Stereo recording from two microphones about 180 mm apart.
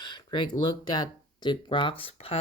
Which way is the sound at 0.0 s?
25° left (ahead or behind).